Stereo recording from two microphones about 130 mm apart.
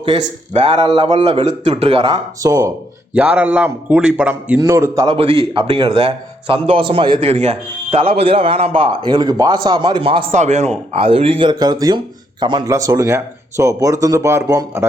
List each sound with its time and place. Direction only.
0.0 s speech: 45° right (ahead or behind); by 2.7 s 25° right (ahead or behind)
3.2 s a man's voice: 10° right (ahead or behind)
4.6 s speech: 20° right (ahead or behind)
5.0 s speech: 45° right (ahead or behind)
7.2 s speech: 55° right (ahead or behind); by 10.0 s 35° right (ahead or behind)
10.0 s speech: 45° right (ahead or behind)
10.3 s speech: 60° right (ahead or behind); by 14.8 s 25° right (ahead or behind)